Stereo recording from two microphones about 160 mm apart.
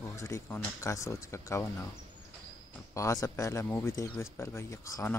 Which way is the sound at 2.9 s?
20° left (ahead or behind).